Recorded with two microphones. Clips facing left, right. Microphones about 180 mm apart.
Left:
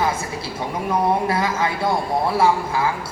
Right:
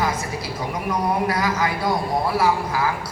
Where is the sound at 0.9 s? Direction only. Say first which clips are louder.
Left 3 dB; 25° left (ahead or behind).